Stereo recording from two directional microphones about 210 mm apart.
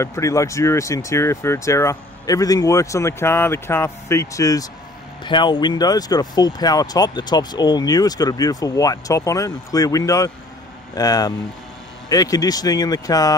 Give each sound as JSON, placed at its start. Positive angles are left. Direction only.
{"t": 0.0, "sound": "speech", "side_deg": 15}